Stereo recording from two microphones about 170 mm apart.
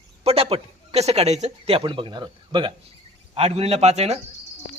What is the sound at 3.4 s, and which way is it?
Speech, 35° right (ahead or behind).